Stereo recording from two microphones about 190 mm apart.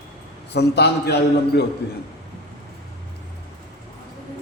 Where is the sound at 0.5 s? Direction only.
60° left (ahead or behind).